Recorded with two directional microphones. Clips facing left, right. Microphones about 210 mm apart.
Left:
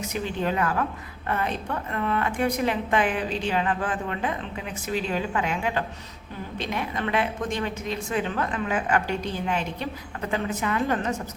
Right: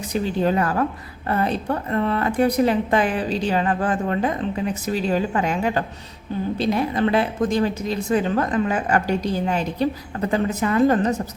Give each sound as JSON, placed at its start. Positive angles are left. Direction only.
{"t": 0.0, "sound": "a woman's voice", "side_deg": -35}